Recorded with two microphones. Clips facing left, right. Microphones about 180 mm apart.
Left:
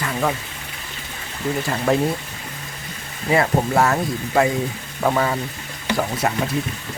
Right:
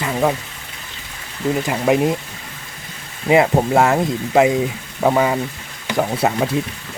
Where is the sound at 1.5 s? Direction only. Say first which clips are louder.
Right 3 dB; 15° right (ahead or behind).